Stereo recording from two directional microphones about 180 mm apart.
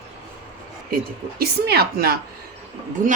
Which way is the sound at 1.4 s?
60° right (ahead or behind).